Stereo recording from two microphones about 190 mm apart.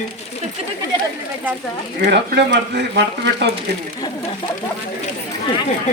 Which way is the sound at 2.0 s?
60° right (ahead or behind).